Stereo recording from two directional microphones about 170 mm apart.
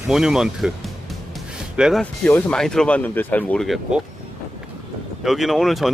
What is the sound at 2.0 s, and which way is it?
Speech, 10° left (ahead or behind).